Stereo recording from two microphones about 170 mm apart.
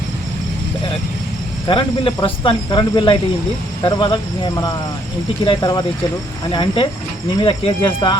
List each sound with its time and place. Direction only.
1.6 s speech: 30° left (ahead or behind)